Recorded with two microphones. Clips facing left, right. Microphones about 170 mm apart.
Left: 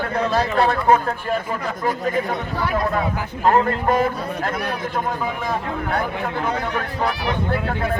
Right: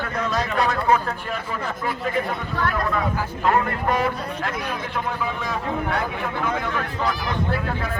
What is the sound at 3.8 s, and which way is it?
Speech, 45° left (ahead or behind).